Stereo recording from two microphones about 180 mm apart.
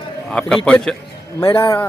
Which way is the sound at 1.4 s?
25° left (ahead or behind).